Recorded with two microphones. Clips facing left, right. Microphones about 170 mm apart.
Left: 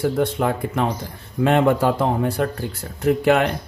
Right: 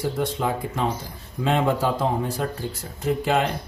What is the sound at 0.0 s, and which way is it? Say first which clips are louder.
A man's voice: left 5 dB; 60° left (ahead or behind).